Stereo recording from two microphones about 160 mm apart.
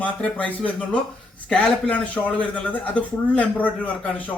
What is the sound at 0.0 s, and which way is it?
Speech, 10° left (ahead or behind).